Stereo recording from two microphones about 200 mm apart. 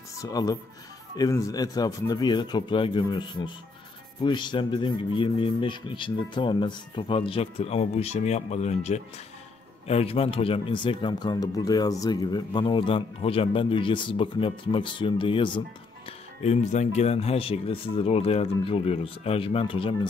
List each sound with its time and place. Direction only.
0.2 s speech: 20° left (ahead or behind)
16.4 s speech: 35° left (ahead or behind)